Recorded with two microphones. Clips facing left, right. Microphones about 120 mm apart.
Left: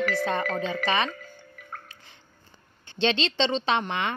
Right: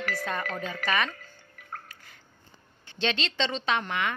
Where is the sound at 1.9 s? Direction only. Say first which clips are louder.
Even; 25° left (ahead or behind).